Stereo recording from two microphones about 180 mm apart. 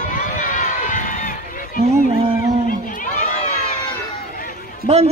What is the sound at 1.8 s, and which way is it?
Speech, 35° right (ahead or behind).